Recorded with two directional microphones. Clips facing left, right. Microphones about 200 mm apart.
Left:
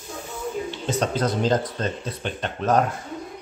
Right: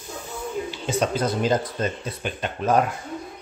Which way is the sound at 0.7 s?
5° right (ahead or behind).